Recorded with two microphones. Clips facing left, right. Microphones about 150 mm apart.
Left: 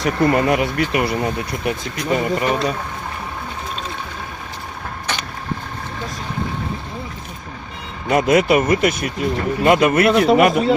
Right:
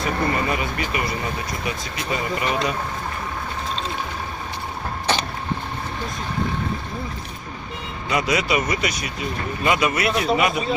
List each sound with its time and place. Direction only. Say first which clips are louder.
0.0 s speech: left 6 dB; 70° left (ahead or behind); by 2.7 s 45° left (ahead or behind)
8.1 s speech: left 7 dB; 50° left (ahead or behind)